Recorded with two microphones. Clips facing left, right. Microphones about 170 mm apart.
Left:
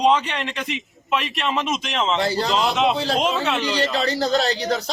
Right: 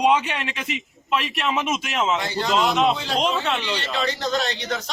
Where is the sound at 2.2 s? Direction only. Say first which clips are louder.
Left 1 dB; 35° left (ahead or behind).